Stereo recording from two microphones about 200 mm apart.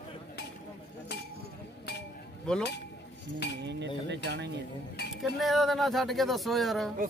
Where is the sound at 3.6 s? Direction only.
60° right (ahead or behind).